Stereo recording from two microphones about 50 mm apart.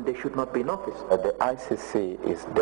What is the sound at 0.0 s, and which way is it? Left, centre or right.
A man's voice, centre.